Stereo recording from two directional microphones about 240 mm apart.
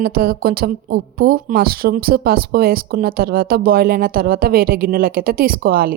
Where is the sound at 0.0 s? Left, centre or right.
Right.